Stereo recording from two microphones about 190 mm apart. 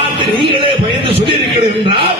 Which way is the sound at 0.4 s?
25° right (ahead or behind).